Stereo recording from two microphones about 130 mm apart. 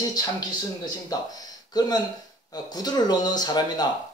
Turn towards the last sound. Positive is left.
turn(degrees=30)  # may be behind; listen again after turning